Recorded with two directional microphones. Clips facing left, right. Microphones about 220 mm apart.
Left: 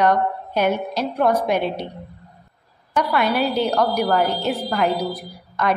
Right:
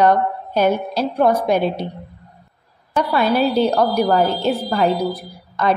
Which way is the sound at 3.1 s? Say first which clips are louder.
Right 4 dB; 30° right (ahead or behind).